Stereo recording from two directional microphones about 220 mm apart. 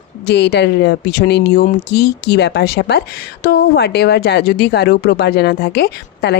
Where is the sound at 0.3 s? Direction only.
50° left (ahead or behind).